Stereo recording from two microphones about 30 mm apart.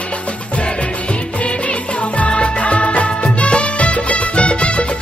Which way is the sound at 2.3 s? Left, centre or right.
Left.